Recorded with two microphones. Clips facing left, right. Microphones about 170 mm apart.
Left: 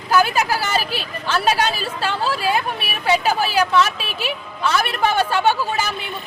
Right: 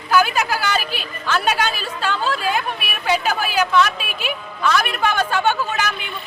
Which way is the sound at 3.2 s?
30° left (ahead or behind).